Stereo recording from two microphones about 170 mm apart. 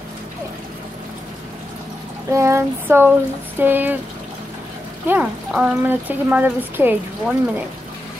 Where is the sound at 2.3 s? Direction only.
15° right (ahead or behind).